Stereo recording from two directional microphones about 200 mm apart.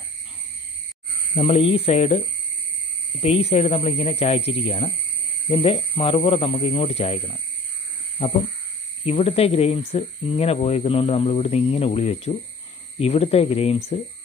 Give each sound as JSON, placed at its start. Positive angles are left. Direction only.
{"t": 1.3, "sound": "speech", "side_deg": 30}
{"t": 9.0, "sound": "speech", "side_deg": 30}